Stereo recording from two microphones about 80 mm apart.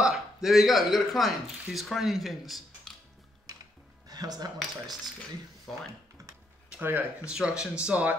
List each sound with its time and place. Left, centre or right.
0.0 s speech: centre
4.1 s speech: right
6.8 s speech: right
7.2 s speech: centre